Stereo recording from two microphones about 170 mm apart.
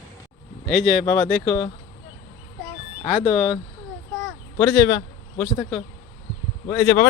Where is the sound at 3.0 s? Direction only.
40° left (ahead or behind).